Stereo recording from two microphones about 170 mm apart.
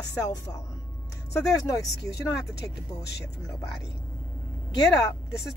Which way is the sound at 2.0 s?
85° left.